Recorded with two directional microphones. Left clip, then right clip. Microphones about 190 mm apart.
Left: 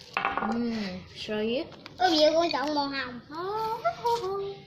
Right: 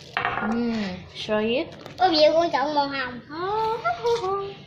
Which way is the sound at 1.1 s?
20° right (ahead or behind).